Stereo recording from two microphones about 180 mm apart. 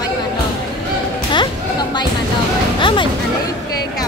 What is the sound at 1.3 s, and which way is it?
Music, 25° left (ahead or behind).